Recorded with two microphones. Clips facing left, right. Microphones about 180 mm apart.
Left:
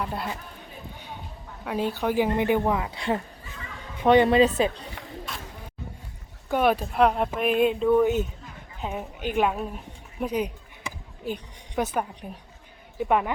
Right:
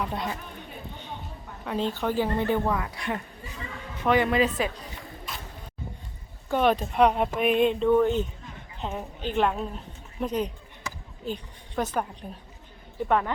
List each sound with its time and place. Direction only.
0.0 s speech: 5° left (ahead or behind)
1.6 s a woman's voice: 10° left (ahead or behind); by 4.7 s 25° left (ahead or behind)
6.5 s a woman's voice: 10° left (ahead or behind)